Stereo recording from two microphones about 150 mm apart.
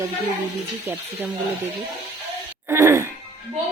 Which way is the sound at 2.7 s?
15° right (ahead or behind).